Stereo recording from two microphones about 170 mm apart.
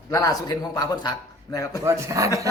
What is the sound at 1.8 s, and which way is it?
Speech, 15° right (ahead or behind).